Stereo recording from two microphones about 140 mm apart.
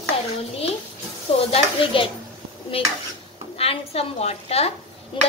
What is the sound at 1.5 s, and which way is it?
Speech, 40° left (ahead or behind).